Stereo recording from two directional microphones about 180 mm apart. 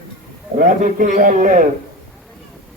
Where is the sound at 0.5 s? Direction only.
50° right (ahead or behind).